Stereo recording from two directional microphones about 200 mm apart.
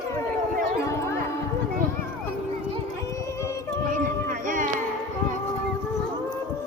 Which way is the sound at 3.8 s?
40° right (ahead or behind).